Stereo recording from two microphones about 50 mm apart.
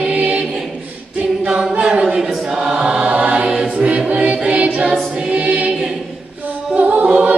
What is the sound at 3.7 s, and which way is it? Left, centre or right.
Music, right.